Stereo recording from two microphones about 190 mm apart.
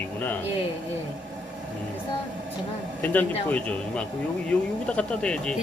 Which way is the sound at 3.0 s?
10° left (ahead or behind).